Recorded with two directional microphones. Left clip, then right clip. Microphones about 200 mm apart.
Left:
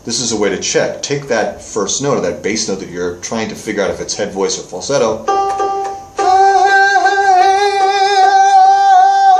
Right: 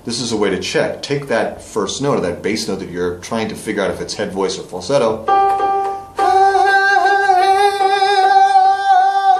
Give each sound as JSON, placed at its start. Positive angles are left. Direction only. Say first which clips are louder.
{"t": 0.1, "sound": "speech", "louder": "left 2 dB", "side_deg": 0}
{"t": 5.2, "sound": "speech", "louder": "right 1 dB", "side_deg": 35}
{"t": 6.2, "sound": "singing", "louder": "left 3 dB", "side_deg": -5}